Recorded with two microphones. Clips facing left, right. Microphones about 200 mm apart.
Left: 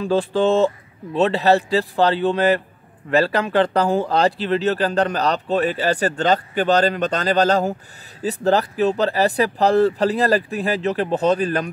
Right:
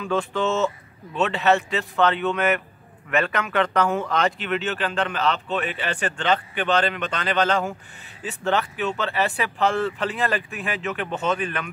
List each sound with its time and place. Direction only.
0.0 s speech: 30° left (ahead or behind)